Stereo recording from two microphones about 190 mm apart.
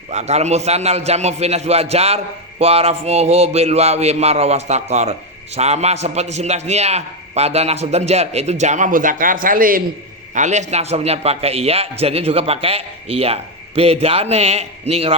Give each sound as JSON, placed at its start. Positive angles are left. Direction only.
{"t": 0.1, "sound": "a man's voice", "side_deg": -35}